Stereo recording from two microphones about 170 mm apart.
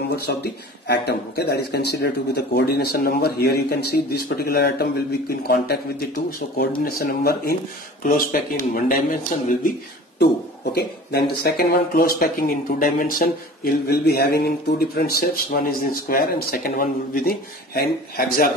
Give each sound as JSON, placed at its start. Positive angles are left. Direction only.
{"t": 0.1, "sound": "speech", "side_deg": 75}
{"t": 10.1, "sound": "speech", "side_deg": 70}